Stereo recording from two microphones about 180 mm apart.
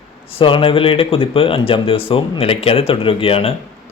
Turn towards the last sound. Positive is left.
turn(degrees=30)  # may be behind; listen again after turning